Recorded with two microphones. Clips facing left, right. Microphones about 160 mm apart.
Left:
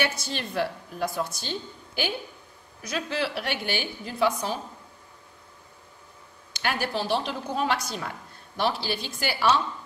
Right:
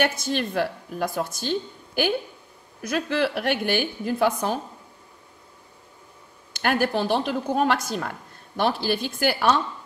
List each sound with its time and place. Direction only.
0.0 s a woman's voice: 50° right (ahead or behind)
6.5 s a woman's voice: 50° right (ahead or behind)